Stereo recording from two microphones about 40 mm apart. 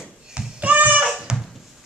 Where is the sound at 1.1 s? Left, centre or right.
Centre.